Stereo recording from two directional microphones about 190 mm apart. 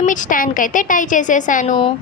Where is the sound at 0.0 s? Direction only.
45° left (ahead or behind).